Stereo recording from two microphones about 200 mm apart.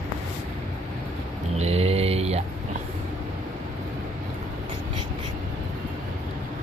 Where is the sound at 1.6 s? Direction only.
30° right (ahead or behind).